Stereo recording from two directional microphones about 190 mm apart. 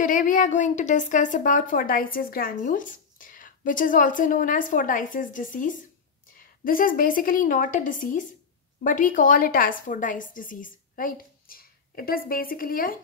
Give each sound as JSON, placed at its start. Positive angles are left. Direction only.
{"t": 0.0, "sound": "speech", "side_deg": 45}